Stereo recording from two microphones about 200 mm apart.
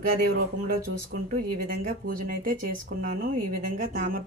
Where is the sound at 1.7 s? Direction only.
45° right (ahead or behind).